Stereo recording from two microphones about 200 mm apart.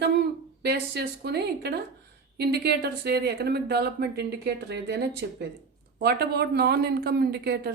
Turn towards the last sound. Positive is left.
turn(degrees=-55)  # may be behind; listen again after turning